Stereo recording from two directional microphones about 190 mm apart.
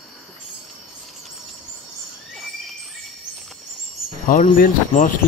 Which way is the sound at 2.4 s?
Centre (ahead or behind).